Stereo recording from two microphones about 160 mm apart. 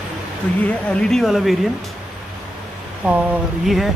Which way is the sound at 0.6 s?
10° left (ahead or behind).